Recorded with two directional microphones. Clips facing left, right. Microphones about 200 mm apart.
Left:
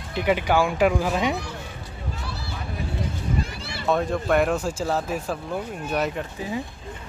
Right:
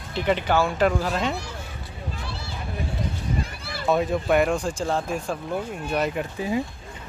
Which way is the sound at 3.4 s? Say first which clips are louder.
Left 1 dB; 55° right (ahead or behind).